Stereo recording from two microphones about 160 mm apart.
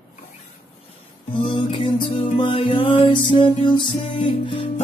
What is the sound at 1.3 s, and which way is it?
Music, 35° left (ahead or behind).